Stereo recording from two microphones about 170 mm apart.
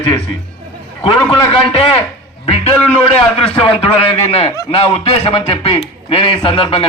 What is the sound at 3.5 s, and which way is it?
A man's voice, 30° left (ahead or behind).